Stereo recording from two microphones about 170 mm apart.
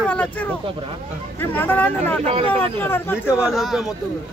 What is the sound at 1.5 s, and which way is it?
Speech, 10° left (ahead or behind).